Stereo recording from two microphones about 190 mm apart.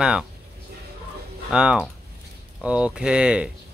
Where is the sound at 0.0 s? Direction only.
5° right (ahead or behind).